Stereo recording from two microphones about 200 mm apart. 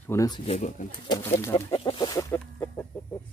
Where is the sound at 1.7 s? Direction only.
25° left (ahead or behind).